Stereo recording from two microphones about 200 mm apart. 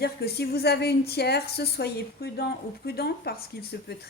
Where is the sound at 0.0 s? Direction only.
55° left (ahead or behind).